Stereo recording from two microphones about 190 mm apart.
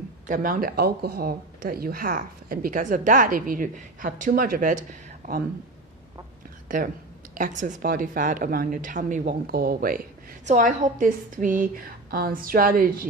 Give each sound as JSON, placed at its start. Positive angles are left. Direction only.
{"t": 0.3, "sound": "a woman's voice", "side_deg": -45}
{"t": 6.7, "sound": "a woman's voice", "side_deg": -45}